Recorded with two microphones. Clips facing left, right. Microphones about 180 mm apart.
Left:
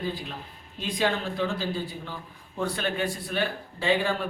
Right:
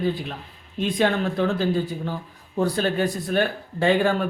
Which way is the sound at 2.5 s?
35° right (ahead or behind).